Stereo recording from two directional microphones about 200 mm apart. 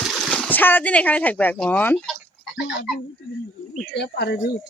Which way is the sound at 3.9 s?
55° left (ahead or behind).